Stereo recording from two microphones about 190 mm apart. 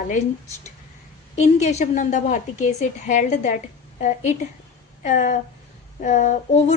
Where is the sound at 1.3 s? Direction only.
35° left (ahead or behind).